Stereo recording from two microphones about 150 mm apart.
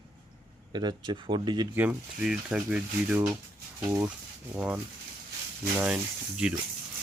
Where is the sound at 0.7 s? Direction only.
30° right (ahead or behind).